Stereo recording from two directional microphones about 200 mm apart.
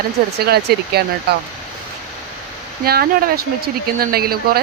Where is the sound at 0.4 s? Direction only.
50° right (ahead or behind).